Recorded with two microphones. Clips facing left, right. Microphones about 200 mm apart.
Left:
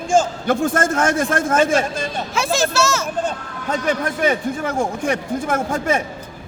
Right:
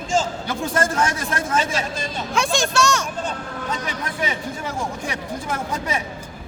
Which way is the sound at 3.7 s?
50° left (ahead or behind).